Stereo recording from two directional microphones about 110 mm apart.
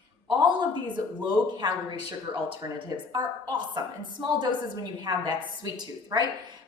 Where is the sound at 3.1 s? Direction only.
40° right (ahead or behind).